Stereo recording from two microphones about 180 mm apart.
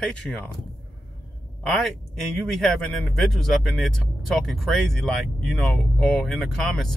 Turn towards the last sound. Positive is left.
turn(degrees=0)  # may be behind; listen again after turning